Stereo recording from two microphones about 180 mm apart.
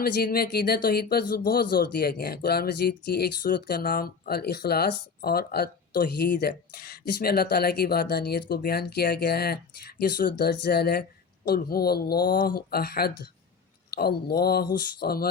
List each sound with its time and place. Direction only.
0.0 s speech: 60° left (ahead or behind)